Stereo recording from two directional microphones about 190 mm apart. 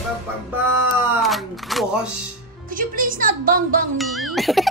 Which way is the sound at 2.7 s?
45° right (ahead or behind).